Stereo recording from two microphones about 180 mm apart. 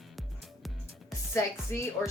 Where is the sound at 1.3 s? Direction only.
15° left (ahead or behind).